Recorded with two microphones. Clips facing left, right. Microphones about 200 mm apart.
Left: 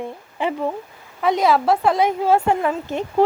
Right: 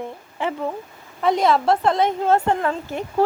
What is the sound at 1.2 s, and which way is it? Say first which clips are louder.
Speech: left 1 dB; 5° left (ahead or behind).